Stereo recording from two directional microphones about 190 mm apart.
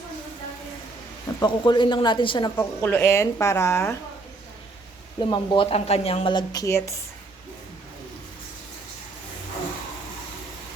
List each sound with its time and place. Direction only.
1.4 s a woman's voice: 25° left (ahead or behind)
2.6 s speech: 10° left (ahead or behind)
5.2 s a woman's voice: 25° left (ahead or behind)